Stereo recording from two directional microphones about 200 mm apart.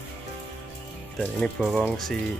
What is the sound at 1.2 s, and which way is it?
Speech, 5° left (ahead or behind).